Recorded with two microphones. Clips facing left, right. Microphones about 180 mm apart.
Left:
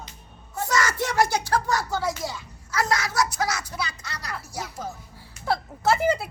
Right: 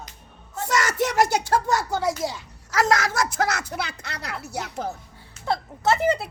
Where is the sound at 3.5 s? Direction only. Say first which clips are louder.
Right 2 dB; 60° right (ahead or behind).